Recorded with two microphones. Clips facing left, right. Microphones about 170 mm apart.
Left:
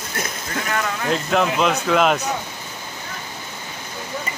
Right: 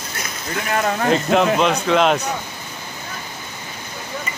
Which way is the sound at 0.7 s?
40° right (ahead or behind).